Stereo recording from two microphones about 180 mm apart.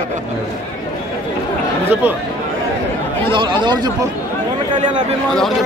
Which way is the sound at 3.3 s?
25° right (ahead or behind).